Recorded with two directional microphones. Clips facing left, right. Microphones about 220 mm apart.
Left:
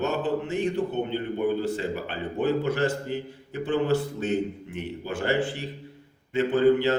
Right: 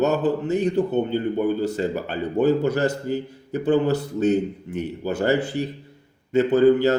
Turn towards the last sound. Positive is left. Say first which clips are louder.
# right 4 dB
turn(degrees=-40)  # may be behind; listen again after turning